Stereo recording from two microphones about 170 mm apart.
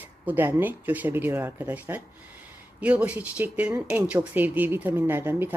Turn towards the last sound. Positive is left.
turn(degrees=-10)  # may be behind; listen again after turning